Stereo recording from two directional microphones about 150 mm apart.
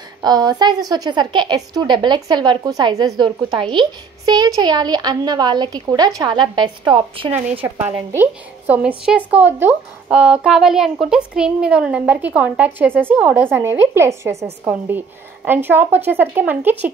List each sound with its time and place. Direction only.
0.2 s a woman's voice: 30° right (ahead or behind)
7.6 s speech: 15° right (ahead or behind)